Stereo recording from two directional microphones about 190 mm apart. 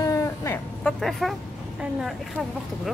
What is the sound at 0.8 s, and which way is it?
Speech, 5° left (ahead or behind).